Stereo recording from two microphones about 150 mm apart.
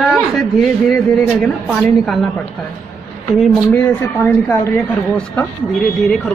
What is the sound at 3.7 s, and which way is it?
Speech, 15° left (ahead or behind).